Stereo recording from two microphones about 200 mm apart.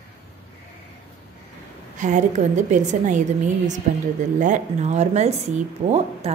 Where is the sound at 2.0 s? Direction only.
40° right (ahead or behind).